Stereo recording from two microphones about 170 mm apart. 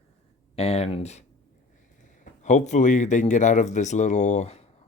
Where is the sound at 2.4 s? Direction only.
45° left (ahead or behind).